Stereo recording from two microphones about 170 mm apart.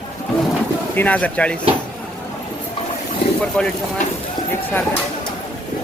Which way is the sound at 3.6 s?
5° left (ahead or behind).